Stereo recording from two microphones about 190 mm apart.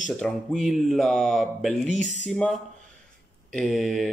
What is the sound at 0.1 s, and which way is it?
Speech, 5° left (ahead or behind).